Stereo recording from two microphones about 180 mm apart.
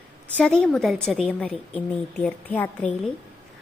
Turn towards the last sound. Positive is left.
turn(degrees=5)  # may be behind; listen again after turning